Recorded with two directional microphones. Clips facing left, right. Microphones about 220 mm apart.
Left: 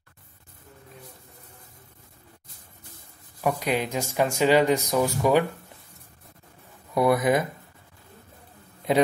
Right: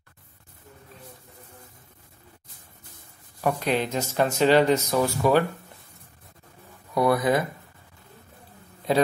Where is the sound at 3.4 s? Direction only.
10° left (ahead or behind).